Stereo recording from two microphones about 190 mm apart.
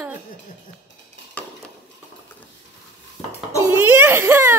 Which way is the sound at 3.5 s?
15° right (ahead or behind).